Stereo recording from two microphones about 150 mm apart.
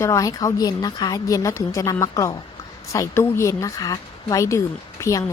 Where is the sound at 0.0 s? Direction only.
20° left (ahead or behind).